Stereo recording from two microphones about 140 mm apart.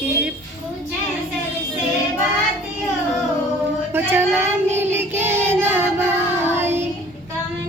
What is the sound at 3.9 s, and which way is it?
Child singing, 15° right (ahead or behind).